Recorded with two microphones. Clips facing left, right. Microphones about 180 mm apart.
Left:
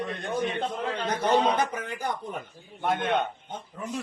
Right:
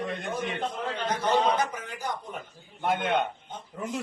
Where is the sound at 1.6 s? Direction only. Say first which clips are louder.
Left 2 dB; 60° left (ahead or behind).